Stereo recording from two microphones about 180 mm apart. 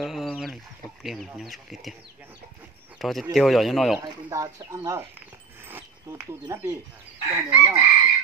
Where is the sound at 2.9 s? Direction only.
Centre (ahead or behind).